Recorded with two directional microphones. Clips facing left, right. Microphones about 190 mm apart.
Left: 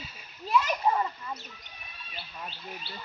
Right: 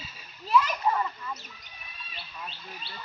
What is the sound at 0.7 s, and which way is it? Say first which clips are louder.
Splash: left 1 dB; 25° left (ahead or behind).